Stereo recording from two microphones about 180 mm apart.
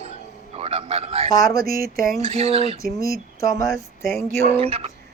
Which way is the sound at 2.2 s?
35° right (ahead or behind).